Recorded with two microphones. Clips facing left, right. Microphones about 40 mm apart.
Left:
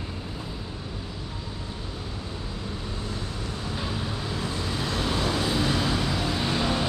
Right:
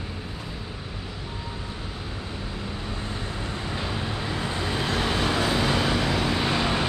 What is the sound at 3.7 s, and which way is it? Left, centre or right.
Vehicle, right.